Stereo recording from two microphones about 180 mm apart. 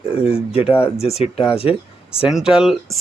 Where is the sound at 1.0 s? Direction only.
35° left (ahead or behind).